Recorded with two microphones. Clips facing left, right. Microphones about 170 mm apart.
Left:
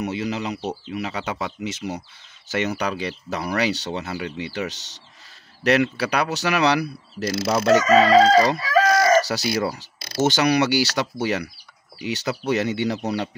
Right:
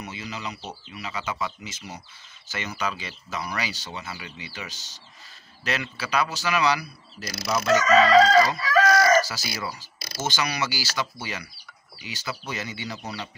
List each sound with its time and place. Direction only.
0.0 s speech: 65° left (ahead or behind)
7.2 s speech: 25° left (ahead or behind)
7.8 s crowing: 35° left (ahead or behind)
8.8 s chicken: 20° left (ahead or behind)
9.3 s speech: 65° left (ahead or behind)